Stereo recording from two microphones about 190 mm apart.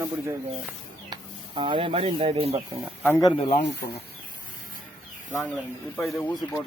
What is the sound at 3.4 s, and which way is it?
Speech, 35° left (ahead or behind).